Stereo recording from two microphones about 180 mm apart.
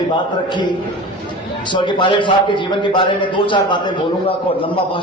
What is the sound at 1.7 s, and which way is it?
A man's voice, 25° left (ahead or behind).